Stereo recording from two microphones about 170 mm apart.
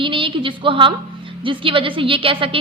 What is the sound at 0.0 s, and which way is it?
A woman's voice, 30° right (ahead or behind).